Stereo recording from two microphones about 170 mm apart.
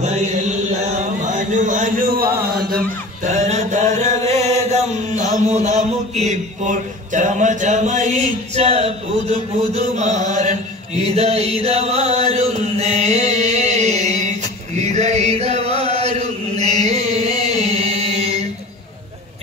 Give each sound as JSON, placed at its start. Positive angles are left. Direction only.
{"t": 0.0, "sound": "chant", "side_deg": -40}
{"t": 1.2, "sound": "a sound", "side_deg": -45}
{"t": 2.3, "sound": "chant", "side_deg": -65}